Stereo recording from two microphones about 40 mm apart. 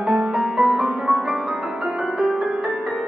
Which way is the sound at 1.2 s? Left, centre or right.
Right.